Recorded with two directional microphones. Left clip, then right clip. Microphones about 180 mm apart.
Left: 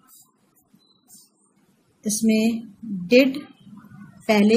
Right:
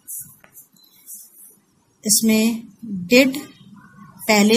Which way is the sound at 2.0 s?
20° right (ahead or behind).